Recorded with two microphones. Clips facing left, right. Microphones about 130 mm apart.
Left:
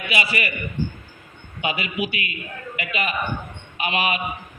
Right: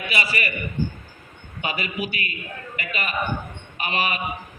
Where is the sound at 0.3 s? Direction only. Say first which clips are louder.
Left 1 dB; 40° right (ahead or behind).